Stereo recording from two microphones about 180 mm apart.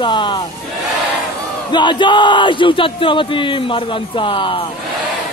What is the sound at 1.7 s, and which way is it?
Speech, 25° left (ahead or behind).